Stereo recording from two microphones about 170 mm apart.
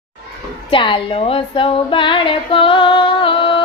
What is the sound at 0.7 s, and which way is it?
Female singing, 30° left (ahead or behind).